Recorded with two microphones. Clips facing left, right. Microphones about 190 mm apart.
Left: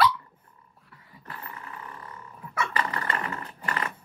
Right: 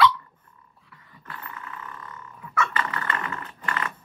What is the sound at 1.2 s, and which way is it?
Roar, 30° left (ahead or behind).